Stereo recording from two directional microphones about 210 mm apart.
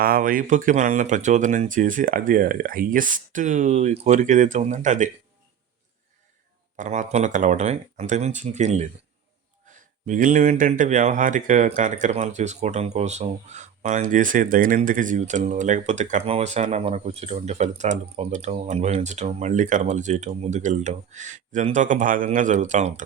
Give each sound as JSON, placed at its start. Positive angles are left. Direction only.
{"t": 0.0, "sound": "speech", "side_deg": -45}
{"t": 6.7, "sound": "speech", "side_deg": -35}